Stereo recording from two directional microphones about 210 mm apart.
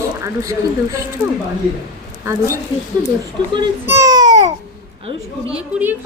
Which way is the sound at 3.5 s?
15° right (ahead or behind).